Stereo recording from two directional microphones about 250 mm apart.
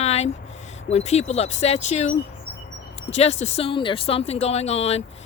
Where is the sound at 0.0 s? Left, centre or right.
Left.